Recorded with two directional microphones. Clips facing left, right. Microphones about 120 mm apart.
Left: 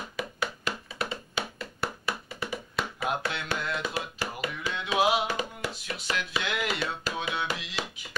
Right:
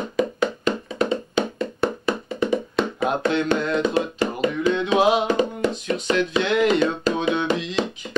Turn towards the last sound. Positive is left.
turn(degrees=5)  # may be behind; listen again after turning